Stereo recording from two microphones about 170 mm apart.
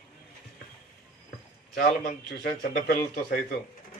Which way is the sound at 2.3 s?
60° left (ahead or behind).